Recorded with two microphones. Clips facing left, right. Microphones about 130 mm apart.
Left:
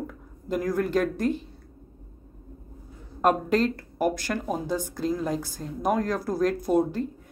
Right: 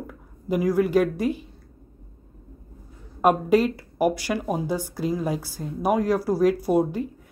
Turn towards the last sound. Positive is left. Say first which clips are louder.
# right 2 dB
turn(degrees=-10)  # may be behind; listen again after turning